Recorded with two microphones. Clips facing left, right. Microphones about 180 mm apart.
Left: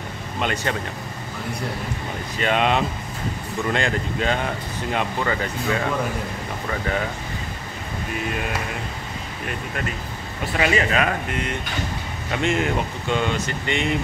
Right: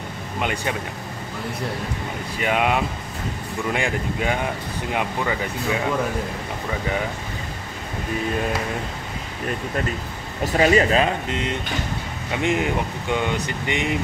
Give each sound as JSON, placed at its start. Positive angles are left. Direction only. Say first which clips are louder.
{"t": 0.4, "sound": "speech", "louder": "left 1 dB", "side_deg": -15}
{"t": 2.4, "sound": "speech", "louder": "left 1 dB", "side_deg": -10}
{"t": 10.4, "sound": "speech", "louder": "right 4 dB", "side_deg": -40}